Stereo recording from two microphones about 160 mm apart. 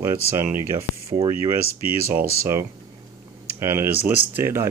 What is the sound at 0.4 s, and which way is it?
Speech, 15° right (ahead or behind).